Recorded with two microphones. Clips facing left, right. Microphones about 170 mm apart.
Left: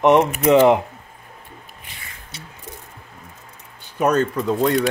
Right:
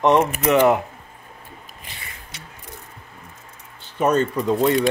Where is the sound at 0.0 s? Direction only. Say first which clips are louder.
Left 2 dB; 20° left (ahead or behind).